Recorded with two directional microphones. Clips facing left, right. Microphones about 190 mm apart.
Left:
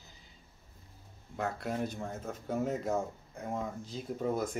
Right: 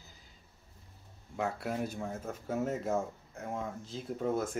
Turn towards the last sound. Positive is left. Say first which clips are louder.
# even
turn(degrees=0)  # may be behind; listen again after turning